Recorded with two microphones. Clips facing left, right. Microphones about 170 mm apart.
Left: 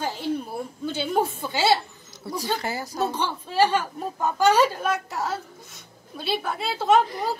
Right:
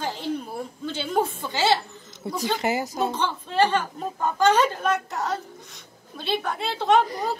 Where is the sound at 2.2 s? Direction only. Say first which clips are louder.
Right 3 dB; 20° right (ahead or behind).